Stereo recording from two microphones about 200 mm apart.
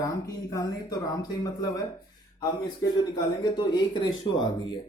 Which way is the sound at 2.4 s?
20° left (ahead or behind).